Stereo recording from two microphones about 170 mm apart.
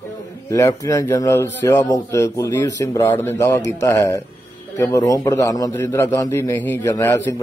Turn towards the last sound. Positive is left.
turn(degrees=15)  # may be behind; listen again after turning